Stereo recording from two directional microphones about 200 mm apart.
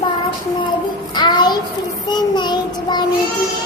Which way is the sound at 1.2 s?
20° left (ahead or behind).